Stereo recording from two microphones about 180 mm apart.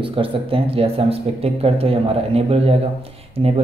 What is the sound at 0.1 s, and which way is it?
Speech, 30° right (ahead or behind).